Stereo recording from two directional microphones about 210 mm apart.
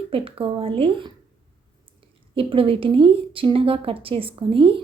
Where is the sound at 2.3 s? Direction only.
25° right (ahead or behind).